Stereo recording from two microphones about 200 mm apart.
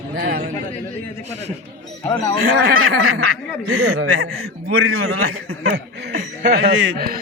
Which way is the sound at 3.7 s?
90° right.